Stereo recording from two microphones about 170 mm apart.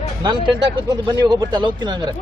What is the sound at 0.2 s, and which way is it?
Speech, 25° right (ahead or behind).